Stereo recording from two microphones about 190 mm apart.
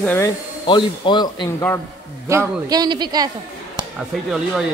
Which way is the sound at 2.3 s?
20° right (ahead or behind).